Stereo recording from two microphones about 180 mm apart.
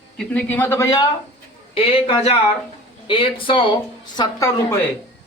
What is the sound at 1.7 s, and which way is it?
A man's voice, 30° left (ahead or behind).